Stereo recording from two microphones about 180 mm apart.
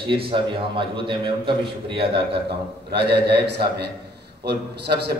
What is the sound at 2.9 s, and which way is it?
A man's voice, 70° right (ahead or behind).